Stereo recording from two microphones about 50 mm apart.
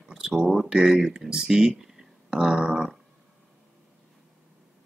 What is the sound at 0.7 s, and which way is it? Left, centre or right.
Speech, centre.